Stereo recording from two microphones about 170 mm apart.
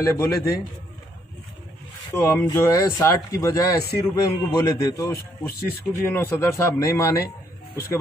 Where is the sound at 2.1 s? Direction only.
15° left (ahead or behind).